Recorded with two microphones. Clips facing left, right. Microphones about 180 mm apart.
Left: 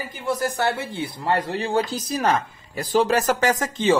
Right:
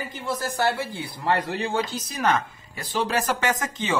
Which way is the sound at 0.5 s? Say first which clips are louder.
Even; 20° left (ahead or behind).